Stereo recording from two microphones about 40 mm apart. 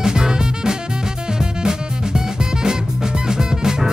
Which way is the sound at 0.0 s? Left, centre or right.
Centre.